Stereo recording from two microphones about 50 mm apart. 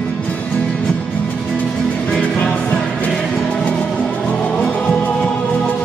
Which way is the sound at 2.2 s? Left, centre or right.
Left.